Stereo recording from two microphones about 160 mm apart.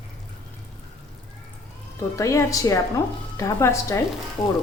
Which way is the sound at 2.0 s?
20° left (ahead or behind).